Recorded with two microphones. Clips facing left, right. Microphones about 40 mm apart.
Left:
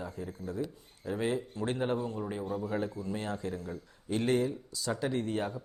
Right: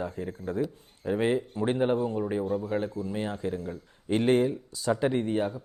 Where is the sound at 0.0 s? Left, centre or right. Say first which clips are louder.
Right 6 dB; right.